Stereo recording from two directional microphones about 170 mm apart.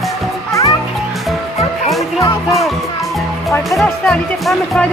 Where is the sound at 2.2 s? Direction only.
20° left (ahead or behind).